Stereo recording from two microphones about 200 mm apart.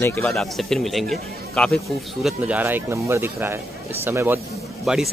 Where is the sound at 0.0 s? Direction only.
10° left (ahead or behind).